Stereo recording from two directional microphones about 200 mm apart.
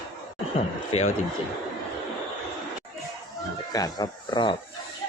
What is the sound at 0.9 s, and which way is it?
Music, 30° left (ahead or behind).